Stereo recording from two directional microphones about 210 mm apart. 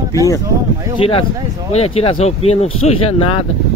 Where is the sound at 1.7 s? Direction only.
30° left (ahead or behind).